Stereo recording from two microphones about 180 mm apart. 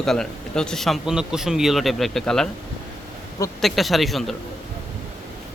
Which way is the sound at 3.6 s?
Centre (ahead or behind).